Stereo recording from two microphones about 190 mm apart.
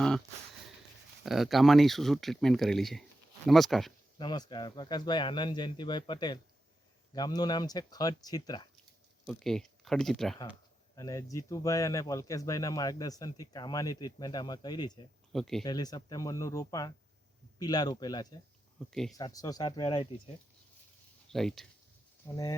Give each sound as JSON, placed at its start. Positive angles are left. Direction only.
{"t": 1.2, "sound": "speech", "side_deg": 0}
{"t": 4.2, "sound": "speech", "side_deg": 25}
{"t": 9.2, "sound": "speech", "side_deg": 0}
{"t": 10.9, "sound": "speech", "side_deg": 20}
{"t": 15.3, "sound": "speech", "side_deg": 0}
{"t": 15.6, "sound": "speech", "side_deg": 20}
{"t": 18.9, "sound": "speech", "side_deg": 0}
{"t": 19.1, "sound": "speech", "side_deg": 20}
{"t": 21.3, "sound": "speech", "side_deg": 0}